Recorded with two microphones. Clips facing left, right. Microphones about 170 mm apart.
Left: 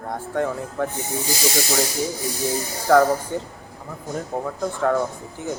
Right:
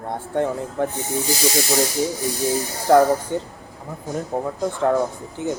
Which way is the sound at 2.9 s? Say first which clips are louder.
Right 1 dB; 20° right (ahead or behind).